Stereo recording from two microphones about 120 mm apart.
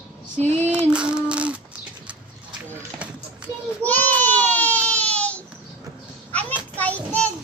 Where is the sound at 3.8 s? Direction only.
15° left (ahead or behind).